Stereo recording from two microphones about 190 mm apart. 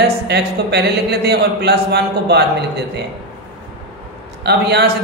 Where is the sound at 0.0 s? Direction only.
60° right (ahead or behind).